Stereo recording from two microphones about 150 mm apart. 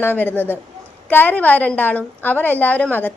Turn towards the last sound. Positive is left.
turn(degrees=10)  # may be behind; listen again after turning